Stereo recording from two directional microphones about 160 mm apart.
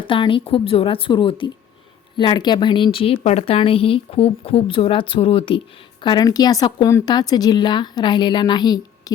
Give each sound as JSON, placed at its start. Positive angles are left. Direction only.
{"t": 0.0, "sound": "a woman's voice", "side_deg": 30}